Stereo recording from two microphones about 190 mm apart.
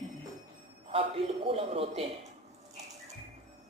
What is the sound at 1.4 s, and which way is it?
Speech, 30° right (ahead or behind).